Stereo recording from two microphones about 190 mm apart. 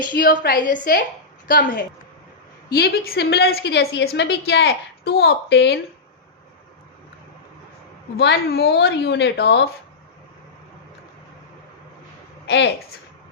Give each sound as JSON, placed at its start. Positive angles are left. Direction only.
{"t": 0.2, "sound": "a woman's voice", "side_deg": 50}
{"t": 8.1, "sound": "a woman's voice", "side_deg": 60}
{"t": 12.5, "sound": "a woman's voice", "side_deg": 65}